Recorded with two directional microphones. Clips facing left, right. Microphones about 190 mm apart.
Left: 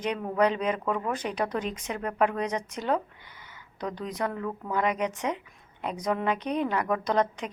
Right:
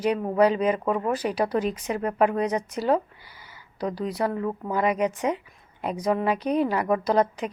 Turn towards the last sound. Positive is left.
turn(degrees=-5)  # may be behind; listen again after turning